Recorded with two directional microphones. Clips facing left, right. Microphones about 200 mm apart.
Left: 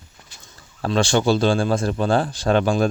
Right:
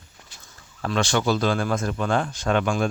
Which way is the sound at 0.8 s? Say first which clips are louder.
Left 4 dB; 30° left (ahead or behind).